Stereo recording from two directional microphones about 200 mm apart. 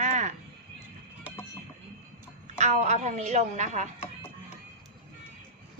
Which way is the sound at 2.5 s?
35° right (ahead or behind).